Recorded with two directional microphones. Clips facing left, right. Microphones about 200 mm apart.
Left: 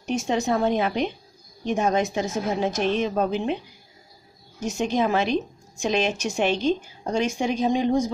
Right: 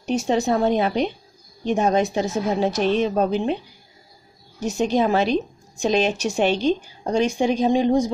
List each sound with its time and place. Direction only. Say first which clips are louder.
0.0 s a woman's voice: right 3 dB; 35° right (ahead or behind)
4.6 s a woman's voice: right 3 dB; 35° right (ahead or behind)